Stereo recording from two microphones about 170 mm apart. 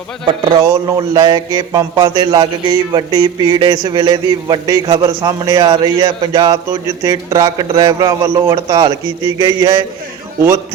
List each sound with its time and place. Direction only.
0.3 s a man's voice: 25° right (ahead or behind)